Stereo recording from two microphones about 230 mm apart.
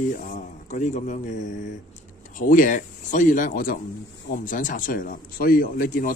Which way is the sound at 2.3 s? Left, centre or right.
Left.